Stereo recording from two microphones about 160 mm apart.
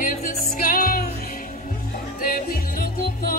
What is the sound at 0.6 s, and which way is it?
Music, 65° left (ahead or behind).